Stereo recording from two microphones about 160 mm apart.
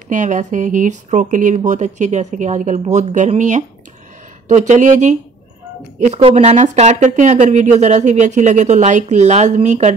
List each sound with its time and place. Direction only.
0.1 s speech: 50° right (ahead or behind)